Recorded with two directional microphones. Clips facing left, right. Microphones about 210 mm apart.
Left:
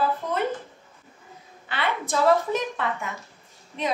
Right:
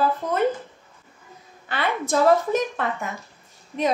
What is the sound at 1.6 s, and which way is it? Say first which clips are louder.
A woman's voice: right 3 dB; 45° right (ahead or behind).